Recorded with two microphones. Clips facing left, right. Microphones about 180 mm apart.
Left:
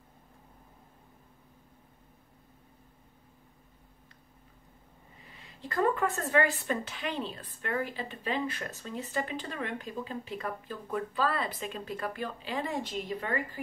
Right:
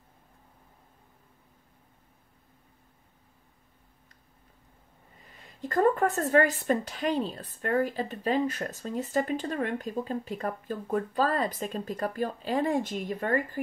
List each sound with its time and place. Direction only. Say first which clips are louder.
5.3 s a woman's voice: right 7 dB; 45° right (ahead or behind)